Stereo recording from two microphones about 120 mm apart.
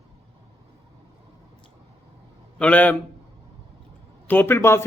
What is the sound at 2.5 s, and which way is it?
Speech, 10° left (ahead or behind).